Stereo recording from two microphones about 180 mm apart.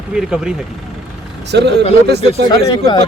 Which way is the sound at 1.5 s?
70° right (ahead or behind).